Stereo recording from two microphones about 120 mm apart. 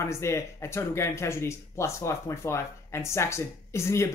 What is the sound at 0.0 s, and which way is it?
Speech, 25° left (ahead or behind).